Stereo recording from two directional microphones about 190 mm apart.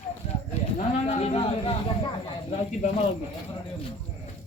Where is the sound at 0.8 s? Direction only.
35° left (ahead or behind).